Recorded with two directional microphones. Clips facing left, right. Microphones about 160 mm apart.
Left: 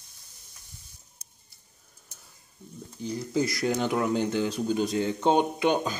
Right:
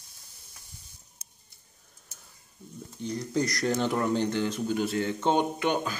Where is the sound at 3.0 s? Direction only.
5° left (ahead or behind).